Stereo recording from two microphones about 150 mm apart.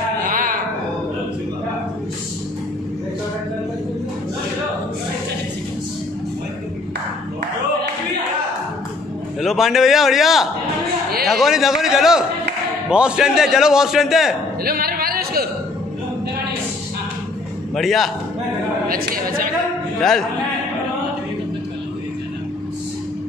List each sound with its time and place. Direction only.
0.3 s a sound: 65° right (ahead or behind)
9.4 s a man's voice: centre (ahead or behind)
14.6 s a sound: 85° right
17.7 s a man's voice: centre (ahead or behind)
18.9 s a woman's voice: 75° right (ahead or behind)
20.0 s a man's voice: centre (ahead or behind)